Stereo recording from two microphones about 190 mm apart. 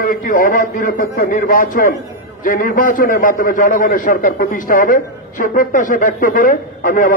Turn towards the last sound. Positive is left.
turn(degrees=45)  # may be behind; listen again after turning